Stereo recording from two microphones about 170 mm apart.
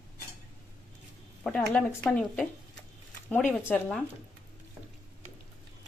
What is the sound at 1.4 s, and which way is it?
Speech, 5° left (ahead or behind).